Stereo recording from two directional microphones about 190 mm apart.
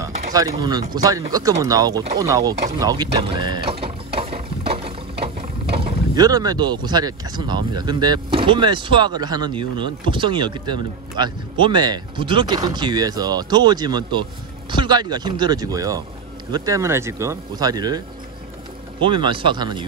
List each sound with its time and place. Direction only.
0.0 s speech: 20° right (ahead or behind)
6.1 s speech: 20° right (ahead or behind)
19.0 s speech: 25° right (ahead or behind)